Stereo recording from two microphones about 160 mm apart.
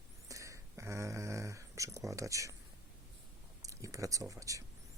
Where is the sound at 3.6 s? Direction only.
20° right (ahead or behind).